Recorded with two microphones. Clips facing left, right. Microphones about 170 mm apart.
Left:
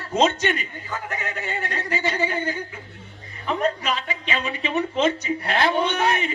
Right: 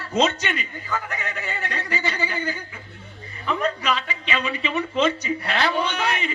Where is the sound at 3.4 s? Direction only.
45° left (ahead or behind).